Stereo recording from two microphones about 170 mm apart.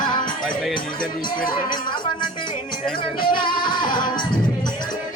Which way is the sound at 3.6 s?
25° left (ahead or behind).